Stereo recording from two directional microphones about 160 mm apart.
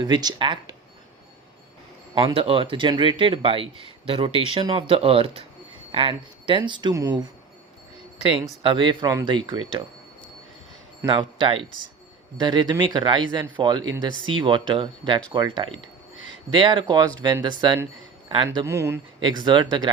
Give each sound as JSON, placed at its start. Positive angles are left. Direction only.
{"t": 0.0, "sound": "speech", "side_deg": -25}
{"t": 2.1, "sound": "speech", "side_deg": -35}
{"t": 8.6, "sound": "speech", "side_deg": -30}
{"t": 11.1, "sound": "speech", "side_deg": -30}
{"t": 18.5, "sound": "speech", "side_deg": -20}
{"t": 19.2, "sound": "speech", "side_deg": -30}